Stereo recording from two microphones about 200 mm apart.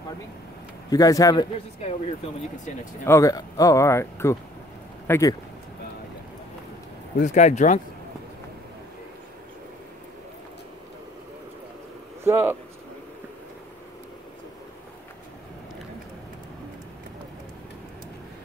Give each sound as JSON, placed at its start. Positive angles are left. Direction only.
{"t": 0.8, "sound": "speech", "side_deg": 15}
{"t": 3.1, "sound": "speech", "side_deg": 15}
{"t": 7.2, "sound": "speech", "side_deg": 35}
{"t": 12.3, "sound": "speech", "side_deg": -10}